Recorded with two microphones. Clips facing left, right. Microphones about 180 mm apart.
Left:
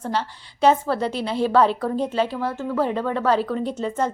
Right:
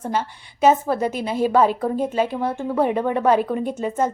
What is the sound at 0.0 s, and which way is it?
Speech, 10° right (ahead or behind).